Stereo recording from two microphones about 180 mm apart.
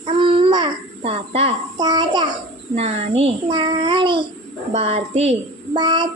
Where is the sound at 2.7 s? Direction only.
35° right (ahead or behind).